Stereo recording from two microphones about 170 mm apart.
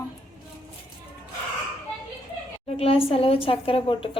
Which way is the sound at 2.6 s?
35° left (ahead or behind).